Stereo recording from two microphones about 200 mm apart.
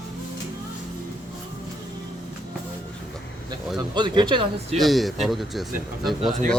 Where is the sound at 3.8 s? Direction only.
20° right (ahead or behind).